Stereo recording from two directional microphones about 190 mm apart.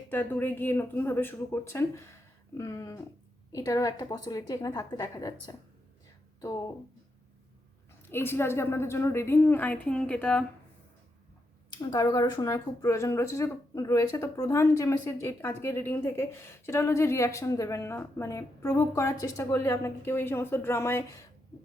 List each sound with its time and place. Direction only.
0.1 s a woman's voice: 10° left (ahead or behind)
8.1 s speech: 10° left (ahead or behind)
11.9 s speech: 20° left (ahead or behind)